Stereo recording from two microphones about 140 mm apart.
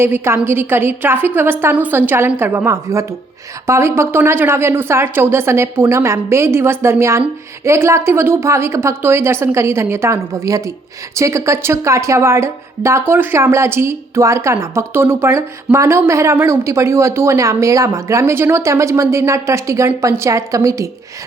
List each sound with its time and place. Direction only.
0.0 s a woman's voice: 15° right (ahead or behind)